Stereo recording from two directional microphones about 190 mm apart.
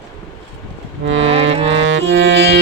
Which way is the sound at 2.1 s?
60° right (ahead or behind).